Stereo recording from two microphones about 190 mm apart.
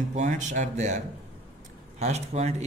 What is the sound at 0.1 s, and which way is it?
A man's voice, 40° right (ahead or behind).